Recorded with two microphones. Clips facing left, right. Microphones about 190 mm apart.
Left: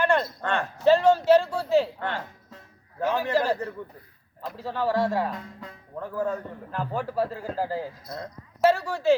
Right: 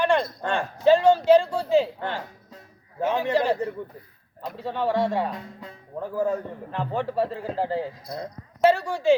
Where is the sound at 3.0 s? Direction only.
20° right (ahead or behind).